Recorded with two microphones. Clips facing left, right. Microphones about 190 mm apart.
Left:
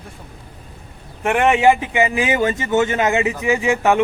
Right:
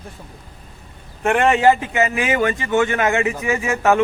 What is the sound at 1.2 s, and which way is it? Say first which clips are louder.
Speech: even; 10° left (ahead or behind).